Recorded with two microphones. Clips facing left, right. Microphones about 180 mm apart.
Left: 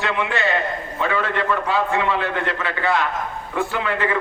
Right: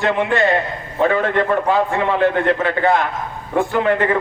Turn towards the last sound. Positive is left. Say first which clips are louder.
# right 6 dB
turn(degrees=-45)  # may be behind; listen again after turning